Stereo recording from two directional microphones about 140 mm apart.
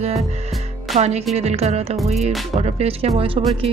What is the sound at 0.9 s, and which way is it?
Speech, 50° right (ahead or behind).